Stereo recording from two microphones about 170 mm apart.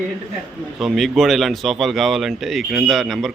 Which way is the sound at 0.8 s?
Centre (ahead or behind).